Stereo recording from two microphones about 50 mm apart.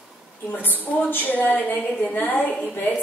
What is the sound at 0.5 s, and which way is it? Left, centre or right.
A woman's voice, left.